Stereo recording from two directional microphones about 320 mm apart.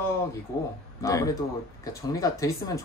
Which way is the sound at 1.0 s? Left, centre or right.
Centre.